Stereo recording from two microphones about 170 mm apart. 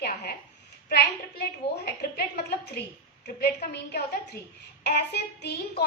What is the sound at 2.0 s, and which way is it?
A woman's voice, 70° left (ahead or behind).